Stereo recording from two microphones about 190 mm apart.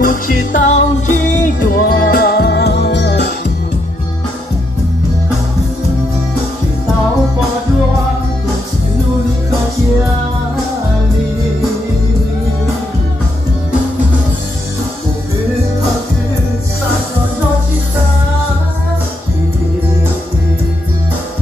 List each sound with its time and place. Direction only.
0.0 s music: 45° left (ahead or behind); by 3.3 s 65° left (ahead or behind)